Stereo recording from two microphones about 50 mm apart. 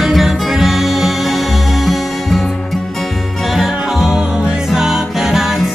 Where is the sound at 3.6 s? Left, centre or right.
Centre.